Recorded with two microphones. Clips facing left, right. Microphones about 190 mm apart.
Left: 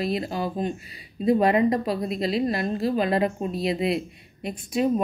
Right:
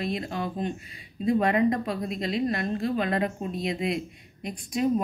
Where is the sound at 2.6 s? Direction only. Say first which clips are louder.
Left 3 dB; 35° left (ahead or behind).